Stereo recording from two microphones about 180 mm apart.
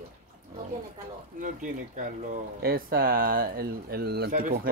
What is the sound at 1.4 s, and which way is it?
Speech, 45° right (ahead or behind).